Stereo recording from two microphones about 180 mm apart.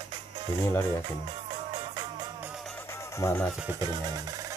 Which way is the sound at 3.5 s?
5° right (ahead or behind).